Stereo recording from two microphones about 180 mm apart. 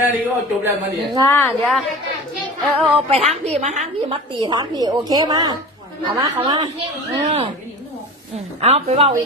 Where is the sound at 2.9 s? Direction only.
35° right (ahead or behind).